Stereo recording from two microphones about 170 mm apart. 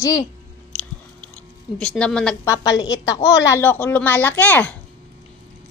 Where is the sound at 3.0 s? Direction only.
20° left (ahead or behind).